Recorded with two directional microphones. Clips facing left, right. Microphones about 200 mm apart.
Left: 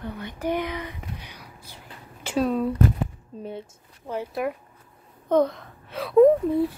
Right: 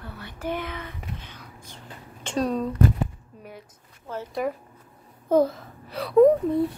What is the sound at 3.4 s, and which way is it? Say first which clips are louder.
Speech: left 9 dB; 25° left (ahead or behind).